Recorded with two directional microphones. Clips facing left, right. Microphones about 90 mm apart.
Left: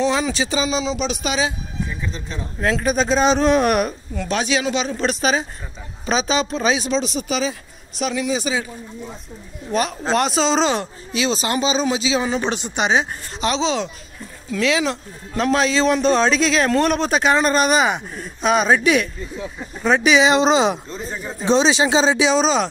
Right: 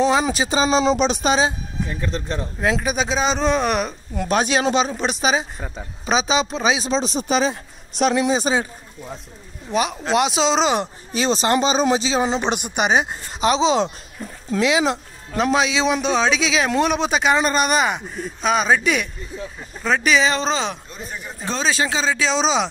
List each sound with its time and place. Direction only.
0.0 s speech: 35° right (ahead or behind)
1.9 s speech: 65° right (ahead or behind)
2.6 s a man's voice: 10° right (ahead or behind); by 3.9 s 5° left (ahead or behind)
4.1 s speech: 15° right (ahead or behind)
5.2 s speech: 10° right (ahead or behind)
6.8 s speech: 30° right (ahead or behind)
8.0 s speech: 50° right (ahead or behind)
8.3 s speech: 35° right (ahead or behind)
9.7 s speech: 10° right (ahead or behind)
11.4 s speech: 45° right (ahead or behind)
12.2 s a man's voice: 20° right (ahead or behind); by 20.2 s 5° left (ahead or behind)
20.2 s speech: 15° left (ahead or behind)
20.9 s speech: 30° left (ahead or behind)
22.2 s a man's voice: 5° left (ahead or behind)